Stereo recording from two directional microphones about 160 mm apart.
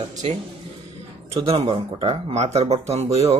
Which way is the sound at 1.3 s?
35° right (ahead or behind).